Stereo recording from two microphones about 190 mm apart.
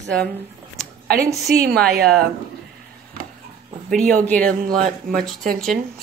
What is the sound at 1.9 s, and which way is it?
Speech, 55° right (ahead or behind).